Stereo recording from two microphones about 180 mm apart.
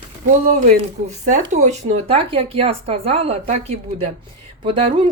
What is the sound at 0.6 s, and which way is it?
A woman's voice, 40° right (ahead or behind).